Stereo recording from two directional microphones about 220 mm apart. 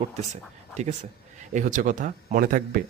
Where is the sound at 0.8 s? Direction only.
30° right (ahead or behind).